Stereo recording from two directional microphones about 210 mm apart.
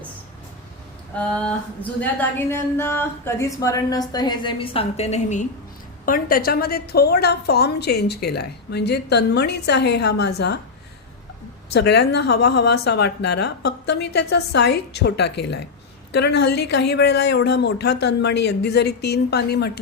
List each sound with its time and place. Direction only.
1.1 s a sound: 5° left (ahead or behind)
2.5 s a woman's voice: 10° left (ahead or behind); by 10.6 s 50° left (ahead or behind)
11.7 s a woman's voice: 55° left (ahead or behind)